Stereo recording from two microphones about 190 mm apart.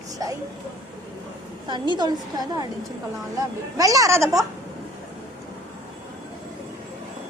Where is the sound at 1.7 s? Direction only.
25° right (ahead or behind).